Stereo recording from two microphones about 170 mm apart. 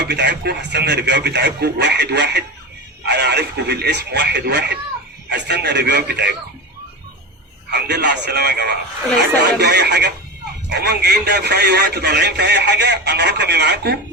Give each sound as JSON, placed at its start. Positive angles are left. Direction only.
{"t": 0.0, "sound": "speech", "side_deg": -80}
{"t": 7.7, "sound": "a man's voice", "side_deg": -80}